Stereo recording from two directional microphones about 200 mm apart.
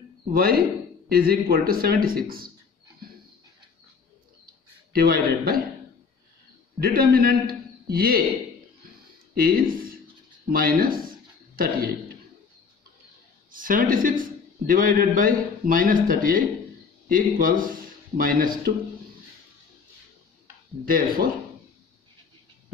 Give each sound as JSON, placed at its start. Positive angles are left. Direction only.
{"t": 0.3, "sound": "speech", "side_deg": -45}
{"t": 4.9, "sound": "speech", "side_deg": -50}
{"t": 6.8, "sound": "a man's voice", "side_deg": -50}
{"t": 9.3, "sound": "speech", "side_deg": -45}
{"t": 13.5, "sound": "a woman's voice", "side_deg": -45}
{"t": 20.8, "sound": "speech", "side_deg": -45}